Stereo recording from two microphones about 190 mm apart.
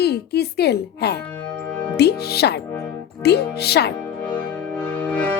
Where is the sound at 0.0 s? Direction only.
60° left (ahead or behind).